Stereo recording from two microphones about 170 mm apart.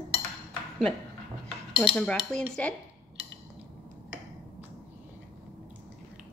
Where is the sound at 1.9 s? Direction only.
5° left (ahead or behind).